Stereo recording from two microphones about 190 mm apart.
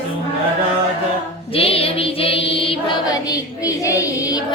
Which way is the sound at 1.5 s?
30° left (ahead or behind).